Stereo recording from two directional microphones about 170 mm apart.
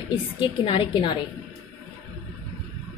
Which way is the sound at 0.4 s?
30° left (ahead or behind).